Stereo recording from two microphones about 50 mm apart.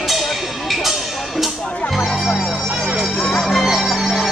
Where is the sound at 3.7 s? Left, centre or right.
Centre.